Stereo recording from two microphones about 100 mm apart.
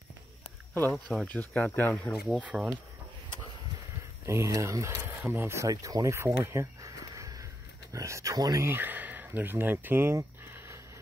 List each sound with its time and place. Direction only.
0.9 s speech: 10° left (ahead or behind)
2.4 s speech: 5° right (ahead or behind)
4.3 s speech: 30° right (ahead or behind)
8.6 s speech: 20° right (ahead or behind)